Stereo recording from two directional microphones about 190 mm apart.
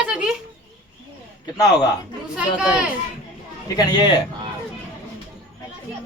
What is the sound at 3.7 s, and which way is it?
Speech, 25° left (ahead or behind).